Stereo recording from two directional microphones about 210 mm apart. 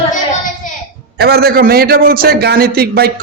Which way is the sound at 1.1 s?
50° right (ahead or behind).